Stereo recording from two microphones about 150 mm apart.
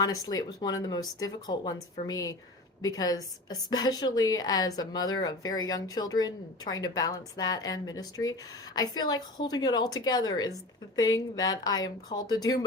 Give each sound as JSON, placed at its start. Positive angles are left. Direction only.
{"t": 0.0, "sound": "a woman's voice", "side_deg": 25}